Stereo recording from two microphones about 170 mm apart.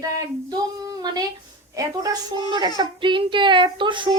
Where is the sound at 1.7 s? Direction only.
20° right (ahead or behind).